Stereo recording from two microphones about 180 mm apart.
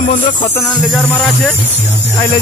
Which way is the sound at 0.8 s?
5° left (ahead or behind).